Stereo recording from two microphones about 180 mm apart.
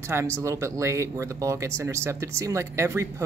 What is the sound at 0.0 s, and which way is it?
Speech, 15° right (ahead or behind).